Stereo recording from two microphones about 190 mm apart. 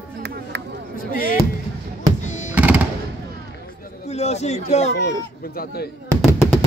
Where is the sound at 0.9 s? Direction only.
45° left (ahead or behind).